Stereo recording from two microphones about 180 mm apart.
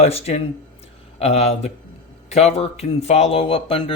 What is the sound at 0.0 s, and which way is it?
Speech, 35° left (ahead or behind).